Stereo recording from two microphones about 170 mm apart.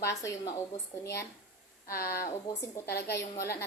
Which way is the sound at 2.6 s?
15° left (ahead or behind).